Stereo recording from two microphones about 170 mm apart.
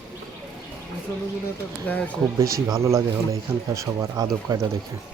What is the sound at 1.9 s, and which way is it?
Speech, 10° left (ahead or behind).